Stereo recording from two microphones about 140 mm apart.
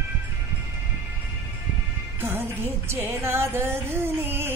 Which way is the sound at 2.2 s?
15° right (ahead or behind).